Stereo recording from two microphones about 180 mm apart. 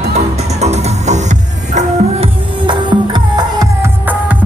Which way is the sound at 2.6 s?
25° right (ahead or behind).